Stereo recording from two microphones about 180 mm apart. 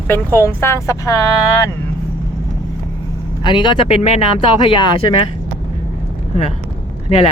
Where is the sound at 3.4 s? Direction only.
25° left (ahead or behind).